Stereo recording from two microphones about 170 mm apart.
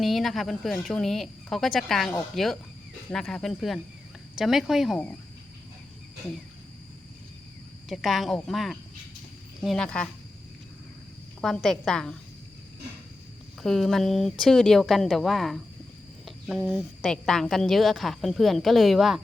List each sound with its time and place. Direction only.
0.0 s a woman's voice: centre (ahead or behind)
7.9 s a woman's voice: centre (ahead or behind)
11.3 s a woman's voice: 5° left (ahead or behind)
13.6 s a woman's voice: centre (ahead or behind)
16.2 s a sound: centre (ahead or behind)
17.1 s a woman's voice: 5° left (ahead or behind)